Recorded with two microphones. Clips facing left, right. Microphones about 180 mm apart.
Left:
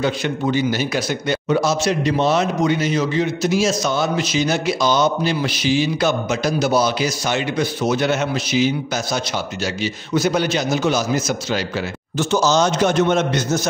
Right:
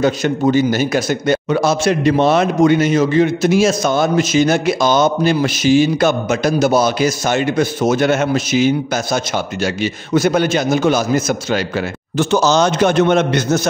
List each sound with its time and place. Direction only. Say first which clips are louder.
0.0 s a man's voice: right 6 dB; 45° right (ahead or behind); by 13.6 s 65° right (ahead or behind)